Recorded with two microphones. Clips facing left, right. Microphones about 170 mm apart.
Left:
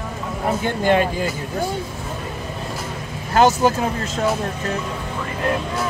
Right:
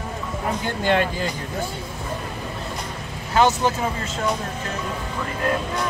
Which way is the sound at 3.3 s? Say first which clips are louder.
Left 3 dB; 45° left (ahead or behind).